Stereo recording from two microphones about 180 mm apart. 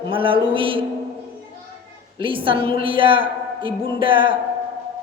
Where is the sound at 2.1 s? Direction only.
30° right (ahead or behind).